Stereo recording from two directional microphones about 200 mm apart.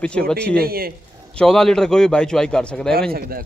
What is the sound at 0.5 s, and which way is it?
Speech, 50° right (ahead or behind).